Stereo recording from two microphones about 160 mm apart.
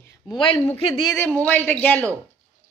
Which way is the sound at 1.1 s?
10° left (ahead or behind).